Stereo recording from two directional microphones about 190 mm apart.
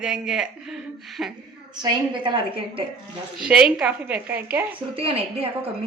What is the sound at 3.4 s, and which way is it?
A woman's voice, 5° right (ahead or behind).